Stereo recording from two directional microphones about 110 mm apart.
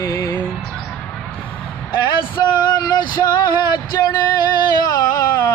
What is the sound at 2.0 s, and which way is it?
Male singing, 40° left (ahead or behind).